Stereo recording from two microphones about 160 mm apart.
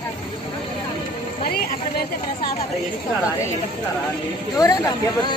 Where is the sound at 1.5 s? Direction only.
75° left (ahead or behind).